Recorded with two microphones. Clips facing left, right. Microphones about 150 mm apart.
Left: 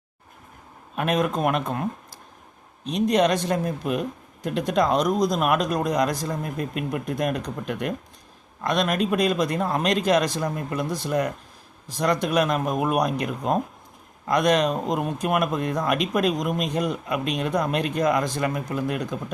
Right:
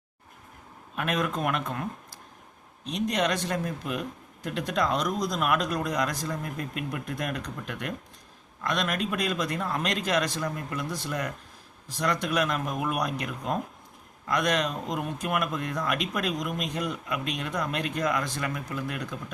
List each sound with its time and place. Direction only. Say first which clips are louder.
0.9 s speech: left 5 dB; 25° left (ahead or behind)
9.6 s speech: left 6 dB; 35° left (ahead or behind)
9.8 s speech: left 7 dB; 20° left (ahead or behind)
10.4 s speech: left 5 dB; 30° left (ahead or behind)